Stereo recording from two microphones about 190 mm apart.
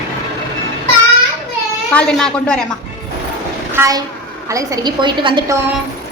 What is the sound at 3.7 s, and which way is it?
A woman's voice, 20° right (ahead or behind).